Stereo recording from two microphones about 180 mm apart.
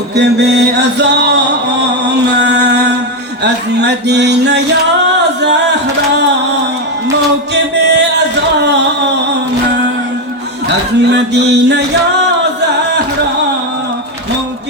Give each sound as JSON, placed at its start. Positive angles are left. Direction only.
{"t": 0.2, "sound": "a sound", "side_deg": -70}
{"t": 2.3, "sound": "music", "side_deg": -70}
{"t": 5.1, "sound": "singing", "side_deg": -70}
{"t": 7.5, "sound": "music", "side_deg": -70}
{"t": 10.7, "sound": "a man's voice", "side_deg": -70}